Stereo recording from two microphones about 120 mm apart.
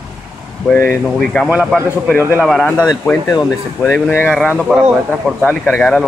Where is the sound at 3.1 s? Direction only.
20° left (ahead or behind).